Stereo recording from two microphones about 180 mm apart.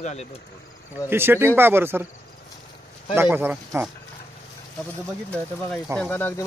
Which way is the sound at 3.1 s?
15° right (ahead or behind).